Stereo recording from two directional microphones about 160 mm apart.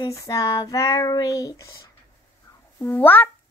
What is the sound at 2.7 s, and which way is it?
Speech, 10° left (ahead or behind).